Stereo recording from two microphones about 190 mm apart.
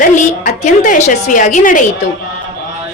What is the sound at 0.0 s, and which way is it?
A woman's voice, 40° left (ahead or behind).